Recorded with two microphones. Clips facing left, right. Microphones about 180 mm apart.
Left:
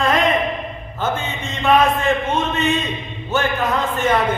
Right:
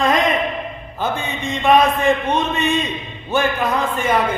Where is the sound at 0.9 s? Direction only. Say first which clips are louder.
Even; 15° right (ahead or behind).